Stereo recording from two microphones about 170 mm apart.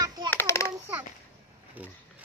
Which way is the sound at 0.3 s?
15° left (ahead or behind).